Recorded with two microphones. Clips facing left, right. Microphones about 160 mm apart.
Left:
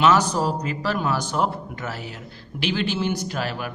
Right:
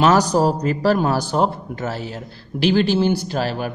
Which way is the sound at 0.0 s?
40° right (ahead or behind).